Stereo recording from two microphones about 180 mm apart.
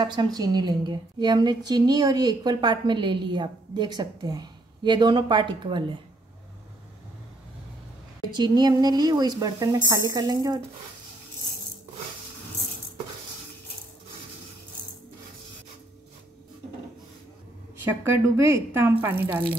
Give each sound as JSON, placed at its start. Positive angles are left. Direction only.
{"t": 0.0, "sound": "a woman's voice", "side_deg": -25}
{"t": 8.3, "sound": "a woman's voice", "side_deg": -25}
{"t": 18.0, "sound": "speech", "side_deg": -15}